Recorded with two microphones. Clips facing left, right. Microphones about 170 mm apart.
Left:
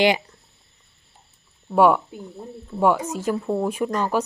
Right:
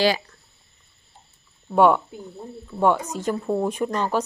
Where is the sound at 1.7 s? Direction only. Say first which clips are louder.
Even; 5° left (ahead or behind).